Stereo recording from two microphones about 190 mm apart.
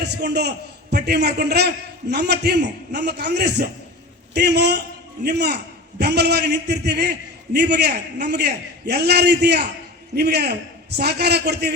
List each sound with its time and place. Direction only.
0.0 s a man's voice: 60° right (ahead or behind)